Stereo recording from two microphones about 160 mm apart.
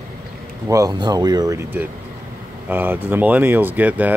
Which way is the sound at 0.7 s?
20° right (ahead or behind).